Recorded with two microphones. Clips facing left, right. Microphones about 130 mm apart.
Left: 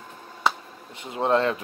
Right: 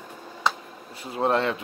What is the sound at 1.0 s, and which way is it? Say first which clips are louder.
Speech: left 1 dB; 25° left (ahead or behind).